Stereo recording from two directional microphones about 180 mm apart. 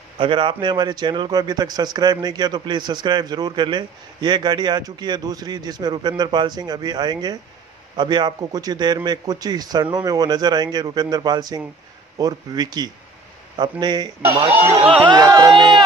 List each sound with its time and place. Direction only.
0.2 s speech: 30° right (ahead or behind)